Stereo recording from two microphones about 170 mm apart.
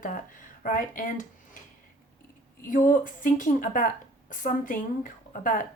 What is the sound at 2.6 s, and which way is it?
Speech, 50° left (ahead or behind).